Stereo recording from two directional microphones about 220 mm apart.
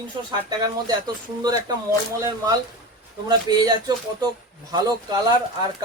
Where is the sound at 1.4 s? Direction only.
20° right (ahead or behind).